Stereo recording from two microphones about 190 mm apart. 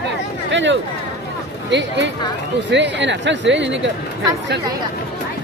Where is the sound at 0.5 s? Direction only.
75° right (ahead or behind).